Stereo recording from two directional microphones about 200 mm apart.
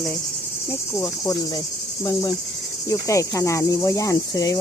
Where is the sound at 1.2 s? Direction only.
20° left (ahead or behind).